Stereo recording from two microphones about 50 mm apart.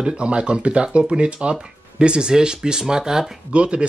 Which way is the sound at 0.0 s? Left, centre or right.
Right.